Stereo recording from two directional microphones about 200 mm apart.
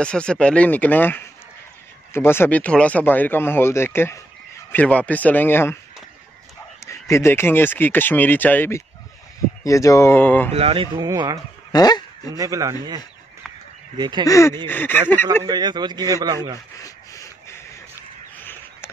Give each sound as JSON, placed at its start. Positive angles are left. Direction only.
{"t": 0.0, "sound": "speech", "side_deg": 5}
{"t": 6.8, "sound": "speech", "side_deg": 15}
{"t": 10.5, "sound": "a man's voice", "side_deg": -30}
{"t": 11.7, "sound": "speech", "side_deg": 20}
{"t": 12.3, "sound": "a man's voice", "side_deg": -15}
{"t": 14.2, "sound": "speech", "side_deg": 15}
{"t": 15.4, "sound": "a man's voice", "side_deg": -20}
{"t": 16.8, "sound": "a sound", "side_deg": 15}